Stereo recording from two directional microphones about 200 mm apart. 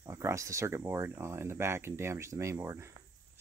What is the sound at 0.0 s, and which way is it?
Speech, 15° right (ahead or behind).